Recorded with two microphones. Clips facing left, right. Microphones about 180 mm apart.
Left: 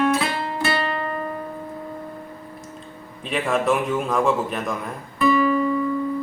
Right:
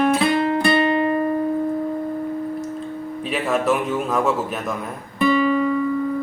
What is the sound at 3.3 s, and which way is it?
A man's voice, centre (ahead or behind).